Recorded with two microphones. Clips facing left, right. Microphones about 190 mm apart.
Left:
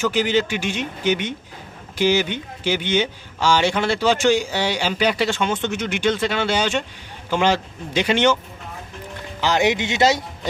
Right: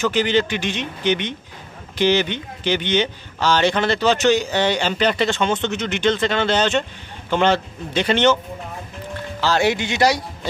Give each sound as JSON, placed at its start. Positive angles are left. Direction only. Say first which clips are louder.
{"t": 0.0, "sound": "speech", "louder": "right 1 dB", "side_deg": 10}
{"t": 9.4, "sound": "speech", "louder": "even", "side_deg": 15}